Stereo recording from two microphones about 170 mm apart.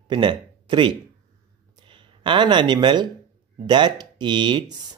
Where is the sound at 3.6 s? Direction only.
25° right (ahead or behind).